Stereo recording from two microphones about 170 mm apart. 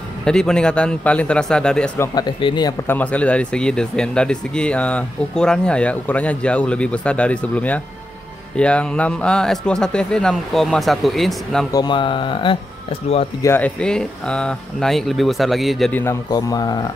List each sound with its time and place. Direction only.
0.2 s speech: 5° left (ahead or behind)
2.1 s a man's voice: 25° left (ahead or behind)
2.9 s speech: 10° left (ahead or behind)
11.7 s a man's voice: 25° left (ahead or behind)
13.4 s speech: 10° left (ahead or behind)
15.9 s a man's voice: 15° left (ahead or behind)